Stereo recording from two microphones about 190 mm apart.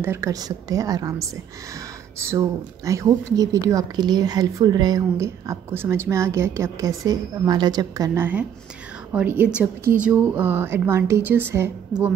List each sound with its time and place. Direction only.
0.0 s a woman's voice: 15° right (ahead or behind)